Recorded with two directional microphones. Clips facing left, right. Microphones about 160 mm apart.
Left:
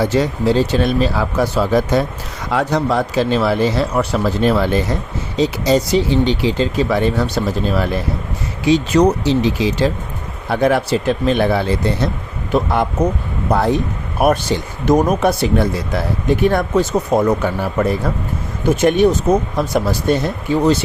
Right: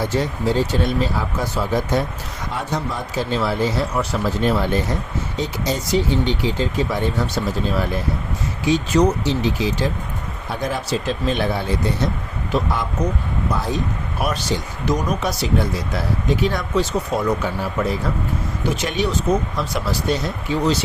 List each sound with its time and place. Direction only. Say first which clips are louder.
0.0 s speech: left 5 dB; 85° left; by 20.7 s 55° left (ahead or behind)